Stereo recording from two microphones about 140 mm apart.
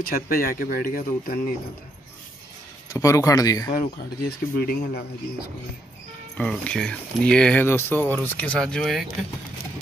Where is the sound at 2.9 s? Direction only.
25° left (ahead or behind).